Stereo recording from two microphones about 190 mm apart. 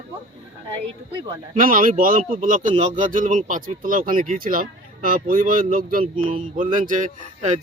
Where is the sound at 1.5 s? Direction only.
45° right (ahead or behind).